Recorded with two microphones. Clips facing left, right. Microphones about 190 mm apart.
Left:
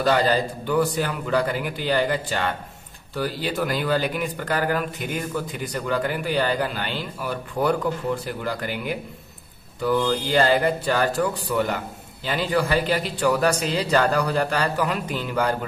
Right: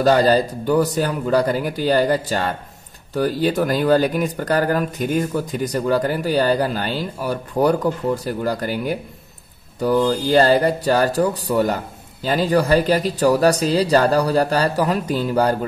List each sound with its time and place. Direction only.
0.0 s speech: 40° right (ahead or behind)